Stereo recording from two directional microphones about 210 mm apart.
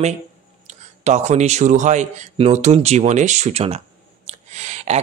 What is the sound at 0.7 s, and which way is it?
Speech, 35° right (ahead or behind).